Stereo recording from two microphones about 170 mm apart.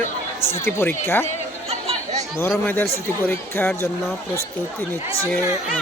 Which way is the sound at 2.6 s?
10° left (ahead or behind).